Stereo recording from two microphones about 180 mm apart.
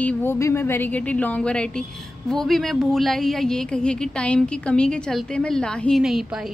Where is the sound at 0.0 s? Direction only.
10° left (ahead or behind).